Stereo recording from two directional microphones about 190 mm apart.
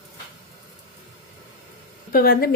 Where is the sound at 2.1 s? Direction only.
50° left (ahead or behind).